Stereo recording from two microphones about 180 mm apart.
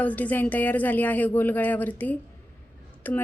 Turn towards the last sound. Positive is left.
turn(degrees=10)  # may be behind; listen again after turning